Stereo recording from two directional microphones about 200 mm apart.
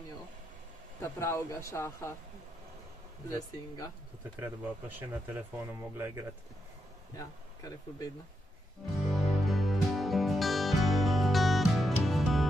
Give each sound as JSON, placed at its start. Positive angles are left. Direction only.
{"t": 1.0, "sound": "a man's voice", "side_deg": 15}
{"t": 3.3, "sound": "a man's voice", "side_deg": 15}
{"t": 4.4, "sound": "speech", "side_deg": -10}
{"t": 7.2, "sound": "speech", "side_deg": 20}
{"t": 9.1, "sound": "music", "side_deg": 0}